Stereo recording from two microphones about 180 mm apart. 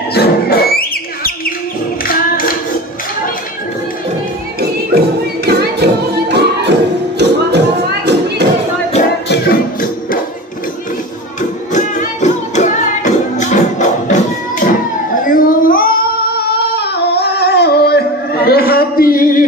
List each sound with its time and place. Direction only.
0.1 s music: 60° left (ahead or behind)
2.0 s a sound: 55° left (ahead or behind)
4.6 s music: 60° right (ahead or behind)
9.3 s music: 50° left (ahead or behind)
11.7 s music: 45° left (ahead or behind)
15.2 s child singing: 50° left (ahead or behind)